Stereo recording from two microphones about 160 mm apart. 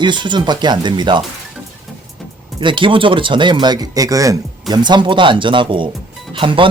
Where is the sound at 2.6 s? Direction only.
30° right (ahead or behind).